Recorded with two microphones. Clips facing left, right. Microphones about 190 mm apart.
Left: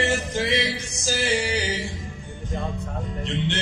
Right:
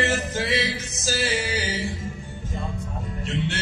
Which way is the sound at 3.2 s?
20° left (ahead or behind).